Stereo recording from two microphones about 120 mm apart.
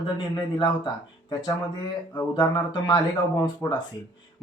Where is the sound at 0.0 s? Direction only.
40° left (ahead or behind).